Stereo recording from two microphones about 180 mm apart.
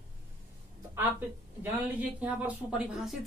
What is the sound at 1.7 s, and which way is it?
Speech, 10° right (ahead or behind).